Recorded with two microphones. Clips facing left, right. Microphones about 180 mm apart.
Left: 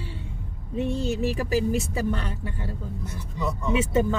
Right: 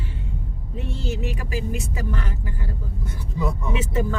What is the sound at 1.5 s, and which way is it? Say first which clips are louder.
Speech: left 5 dB; 35° left (ahead or behind).